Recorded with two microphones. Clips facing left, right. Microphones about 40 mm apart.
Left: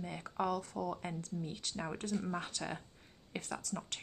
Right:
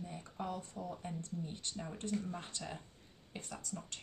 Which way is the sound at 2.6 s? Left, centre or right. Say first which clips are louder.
Left 4 dB; left.